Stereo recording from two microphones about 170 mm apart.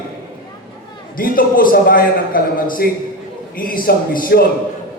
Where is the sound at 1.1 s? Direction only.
55° left (ahead or behind).